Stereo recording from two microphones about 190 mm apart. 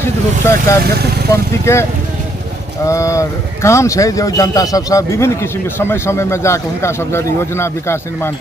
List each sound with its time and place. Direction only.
0.0 s speech: 15° left (ahead or behind)